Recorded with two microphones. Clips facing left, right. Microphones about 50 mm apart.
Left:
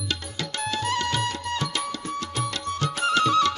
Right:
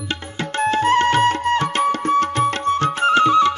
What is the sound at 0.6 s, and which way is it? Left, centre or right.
Music, right.